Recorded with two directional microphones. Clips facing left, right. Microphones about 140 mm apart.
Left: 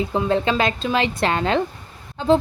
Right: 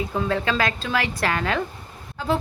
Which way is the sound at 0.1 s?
20° left (ahead or behind).